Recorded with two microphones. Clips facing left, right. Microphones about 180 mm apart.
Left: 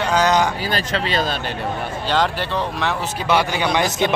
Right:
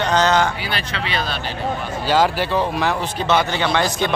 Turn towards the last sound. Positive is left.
turn(degrees=20)  # may be behind; listen again after turning